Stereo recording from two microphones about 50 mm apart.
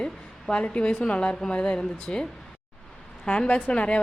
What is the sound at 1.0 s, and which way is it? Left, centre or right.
Speech, left.